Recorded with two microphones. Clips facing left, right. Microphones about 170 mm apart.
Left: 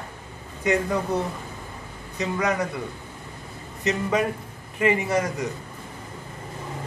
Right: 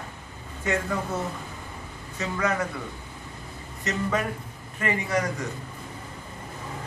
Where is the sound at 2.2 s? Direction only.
15° left (ahead or behind).